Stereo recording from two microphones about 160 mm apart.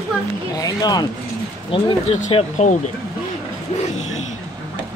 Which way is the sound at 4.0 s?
45° left (ahead or behind).